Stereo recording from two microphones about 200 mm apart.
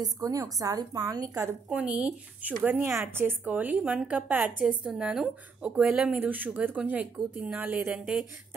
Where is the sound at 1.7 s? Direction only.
5° right (ahead or behind).